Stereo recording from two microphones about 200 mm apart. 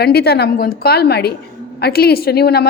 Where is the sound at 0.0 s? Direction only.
50° left (ahead or behind).